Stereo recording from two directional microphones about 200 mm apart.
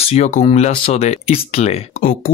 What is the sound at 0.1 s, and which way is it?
Speech, 35° left (ahead or behind).